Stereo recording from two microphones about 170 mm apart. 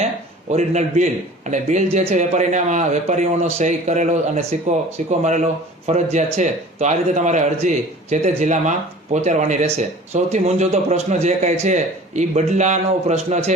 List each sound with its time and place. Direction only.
0.5 s a man's voice: 40° right (ahead or behind)